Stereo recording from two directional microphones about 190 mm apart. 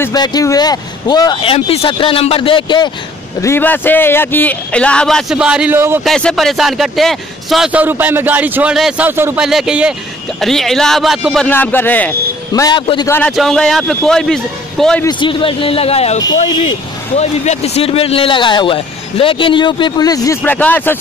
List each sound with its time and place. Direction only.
0.0 s a man's voice: 20° left (ahead or behind)
3.3 s a man's voice: 15° left (ahead or behind); by 5.9 s 10° right (ahead or behind)
6.0 s a man's voice: centre (ahead or behind); by 13.1 s 25° left (ahead or behind)
13.3 s speech: centre (ahead or behind)
15.0 s a man's voice: 25° left (ahead or behind); by 21.0 s 10° left (ahead or behind)